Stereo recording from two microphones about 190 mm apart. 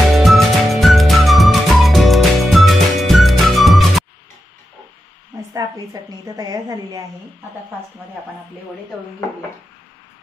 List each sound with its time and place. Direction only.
0.2 s music: centre (ahead or behind)
5.5 s a woman's voice: 20° right (ahead or behind)